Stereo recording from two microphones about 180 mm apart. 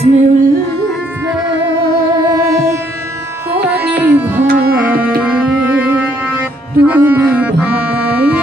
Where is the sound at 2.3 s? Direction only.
20° right (ahead or behind).